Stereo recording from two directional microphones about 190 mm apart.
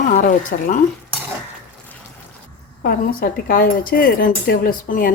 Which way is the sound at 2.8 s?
50° left (ahead or behind).